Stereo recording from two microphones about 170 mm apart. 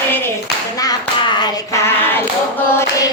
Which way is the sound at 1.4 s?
15° left (ahead or behind).